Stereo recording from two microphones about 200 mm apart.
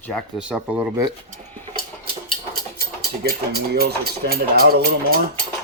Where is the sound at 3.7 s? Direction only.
50° right (ahead or behind).